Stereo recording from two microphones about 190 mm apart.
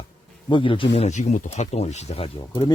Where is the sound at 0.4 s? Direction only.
25° left (ahead or behind).